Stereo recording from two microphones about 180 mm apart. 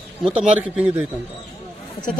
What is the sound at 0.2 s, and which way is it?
Speech, 5° right (ahead or behind).